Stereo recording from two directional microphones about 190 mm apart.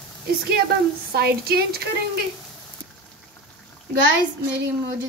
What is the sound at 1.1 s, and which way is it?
Speech, 55° right (ahead or behind).